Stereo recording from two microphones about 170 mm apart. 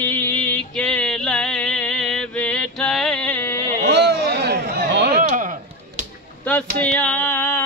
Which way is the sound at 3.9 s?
85° right.